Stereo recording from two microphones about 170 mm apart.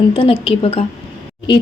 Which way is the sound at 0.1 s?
35° left (ahead or behind).